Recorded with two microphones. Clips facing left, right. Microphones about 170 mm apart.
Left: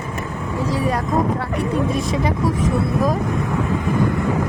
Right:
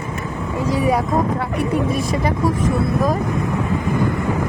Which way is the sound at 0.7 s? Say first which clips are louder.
Right 4 dB; 15° right (ahead or behind).